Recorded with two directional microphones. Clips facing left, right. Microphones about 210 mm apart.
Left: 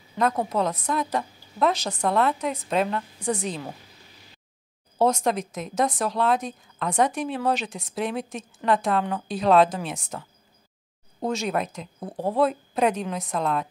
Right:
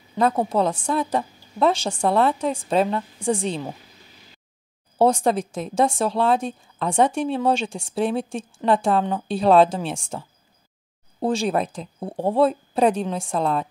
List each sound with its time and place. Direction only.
0.2 s speech: 30° right (ahead or behind)
4.9 s speech: 30° right (ahead or behind)